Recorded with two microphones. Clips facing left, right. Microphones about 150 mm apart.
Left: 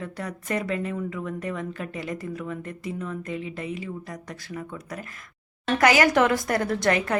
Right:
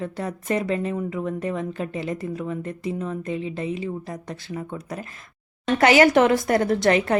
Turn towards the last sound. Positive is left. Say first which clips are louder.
# right 4 dB
turn(degrees=-25)  # may be behind; listen again after turning